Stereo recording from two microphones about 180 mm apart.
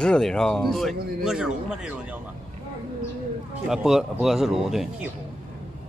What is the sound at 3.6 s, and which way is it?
Speech, 5° right (ahead or behind).